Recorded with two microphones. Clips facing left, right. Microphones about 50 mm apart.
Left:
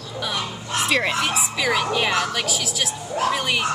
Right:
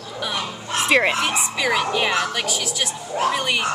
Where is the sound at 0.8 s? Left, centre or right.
Centre.